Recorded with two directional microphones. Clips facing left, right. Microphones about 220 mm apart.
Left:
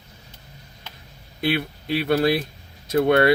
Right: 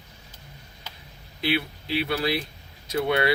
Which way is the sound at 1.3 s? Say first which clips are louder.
Left 3 dB; 50° left (ahead or behind).